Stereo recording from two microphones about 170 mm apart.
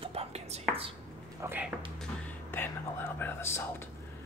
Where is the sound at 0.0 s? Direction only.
35° right (ahead or behind).